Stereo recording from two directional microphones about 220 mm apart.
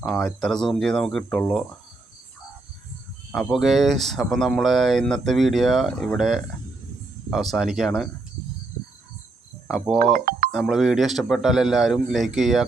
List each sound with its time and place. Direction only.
0.0 s speech: centre (ahead or behind)
3.3 s speech: centre (ahead or behind)
9.6 s speech: centre (ahead or behind)
10.0 s speech: 40° right (ahead or behind)
10.5 s speech: centre (ahead or behind)